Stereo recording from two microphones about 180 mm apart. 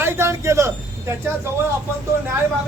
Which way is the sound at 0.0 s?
15° right (ahead or behind).